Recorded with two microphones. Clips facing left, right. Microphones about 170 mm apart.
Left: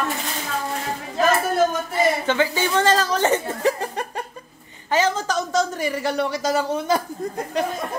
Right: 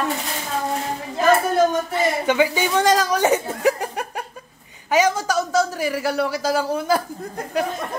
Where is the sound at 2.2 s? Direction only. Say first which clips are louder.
Right 2 dB; 15° right (ahead or behind).